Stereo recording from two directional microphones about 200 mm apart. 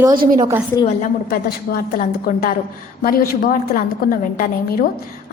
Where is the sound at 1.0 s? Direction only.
45° left (ahead or behind).